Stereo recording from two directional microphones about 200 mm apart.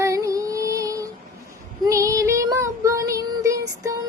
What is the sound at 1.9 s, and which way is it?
Child singing, 15° right (ahead or behind).